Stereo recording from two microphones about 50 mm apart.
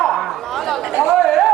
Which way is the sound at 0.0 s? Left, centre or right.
Centre.